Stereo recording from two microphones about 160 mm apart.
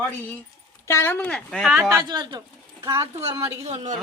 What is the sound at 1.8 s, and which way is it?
A woman's voice, 25° right (ahead or behind).